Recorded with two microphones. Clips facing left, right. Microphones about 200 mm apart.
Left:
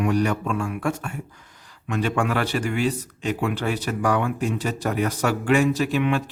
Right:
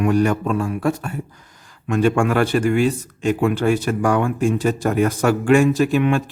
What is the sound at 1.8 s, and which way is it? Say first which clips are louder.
Speech: right 6 dB; 50° right (ahead or behind).